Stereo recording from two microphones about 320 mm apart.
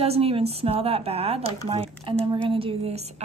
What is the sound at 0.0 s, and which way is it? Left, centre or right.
A woman's voice, centre.